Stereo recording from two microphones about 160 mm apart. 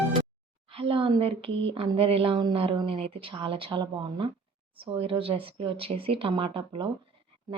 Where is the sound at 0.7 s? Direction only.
35° right (ahead or behind).